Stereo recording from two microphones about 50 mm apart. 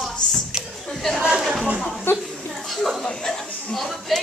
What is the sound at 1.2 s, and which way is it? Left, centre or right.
Speech, centre.